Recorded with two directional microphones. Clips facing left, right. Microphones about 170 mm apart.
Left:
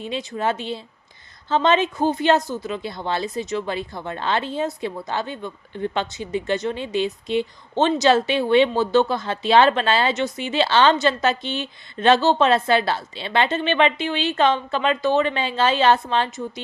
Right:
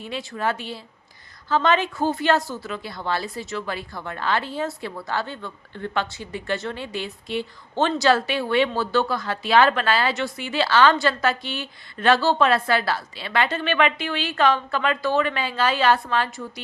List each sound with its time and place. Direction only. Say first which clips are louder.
0.0 s speech: left 2 dB; 20° left (ahead or behind)